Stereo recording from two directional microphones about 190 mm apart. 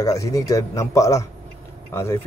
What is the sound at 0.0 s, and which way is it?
A man's voice, 15° left (ahead or behind).